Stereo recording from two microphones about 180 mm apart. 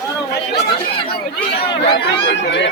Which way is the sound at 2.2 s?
75° left (ahead or behind).